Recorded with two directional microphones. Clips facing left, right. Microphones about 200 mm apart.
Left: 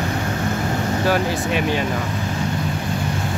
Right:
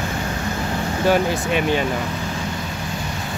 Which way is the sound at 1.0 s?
Centre (ahead or behind).